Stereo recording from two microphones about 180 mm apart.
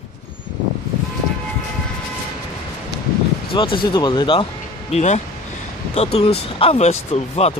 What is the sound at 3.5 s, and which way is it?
Speech, 30° left (ahead or behind).